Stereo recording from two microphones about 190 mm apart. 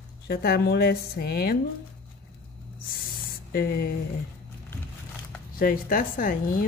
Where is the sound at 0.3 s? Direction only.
55° left (ahead or behind).